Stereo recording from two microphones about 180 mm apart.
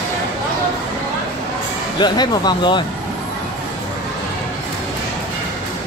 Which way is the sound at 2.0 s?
25° left (ahead or behind).